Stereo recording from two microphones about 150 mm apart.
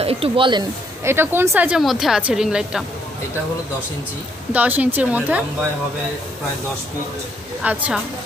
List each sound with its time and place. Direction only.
0.0 s speech: 40° right (ahead or behind)
1.0 s speech: 15° right (ahead or behind)
4.5 s speech: 10° right (ahead or behind)
7.6 s speech: 10° right (ahead or behind)